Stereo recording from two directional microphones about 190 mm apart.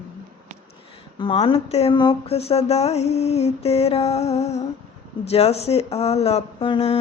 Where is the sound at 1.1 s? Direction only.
30° left (ahead or behind).